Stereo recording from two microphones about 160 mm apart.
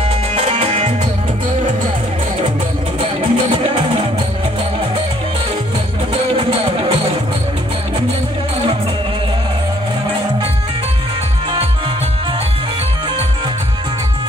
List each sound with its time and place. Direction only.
0.3 s music: 40° right (ahead or behind)
3.0 s music: 35° right (ahead or behind)
6.3 s music: 35° right (ahead or behind)